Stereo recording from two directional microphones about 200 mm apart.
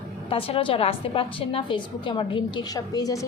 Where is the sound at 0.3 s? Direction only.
30° left (ahead or behind).